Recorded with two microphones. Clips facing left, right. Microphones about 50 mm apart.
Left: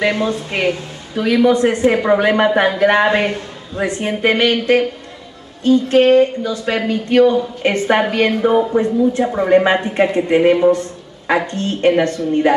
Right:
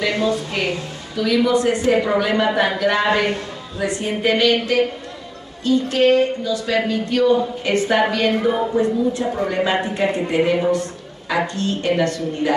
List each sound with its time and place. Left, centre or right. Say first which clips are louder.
0.0 s a woman's voice: left 2 dB; left